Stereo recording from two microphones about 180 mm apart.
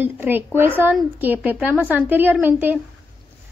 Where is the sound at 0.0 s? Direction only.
10° right (ahead or behind).